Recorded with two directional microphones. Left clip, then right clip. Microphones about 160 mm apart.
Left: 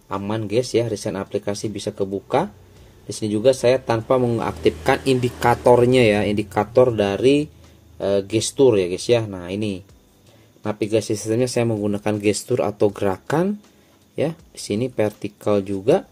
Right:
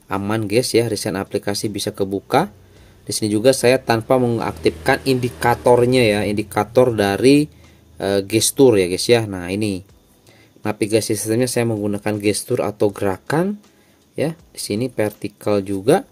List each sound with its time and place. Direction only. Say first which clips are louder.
0.1 s speech: right 3 dB; 35° right (ahead or behind)
4.2 s speech: right 1 dB; 15° right (ahead or behind)
6.7 s speech: right 1 dB; 25° right (ahead or behind)
15.8 s speech: right 3 dB; 25° right (ahead or behind)